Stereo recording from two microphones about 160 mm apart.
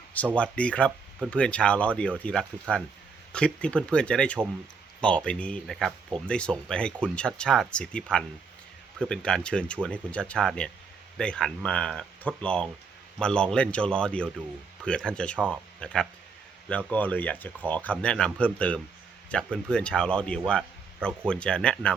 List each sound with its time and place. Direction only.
0.3 s speech: 5° left (ahead or behind)